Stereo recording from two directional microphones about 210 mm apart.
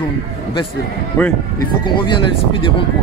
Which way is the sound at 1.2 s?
5° left (ahead or behind).